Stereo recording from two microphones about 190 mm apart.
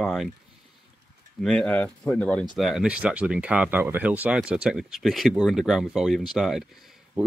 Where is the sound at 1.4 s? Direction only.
5° left (ahead or behind).